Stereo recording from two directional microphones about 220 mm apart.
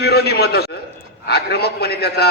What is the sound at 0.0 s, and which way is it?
A man's voice, 45° left (ahead or behind).